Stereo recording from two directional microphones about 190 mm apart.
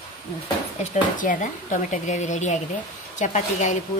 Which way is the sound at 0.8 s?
40° left (ahead or behind).